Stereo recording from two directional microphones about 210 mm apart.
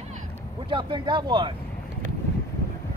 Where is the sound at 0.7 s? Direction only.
20° right (ahead or behind).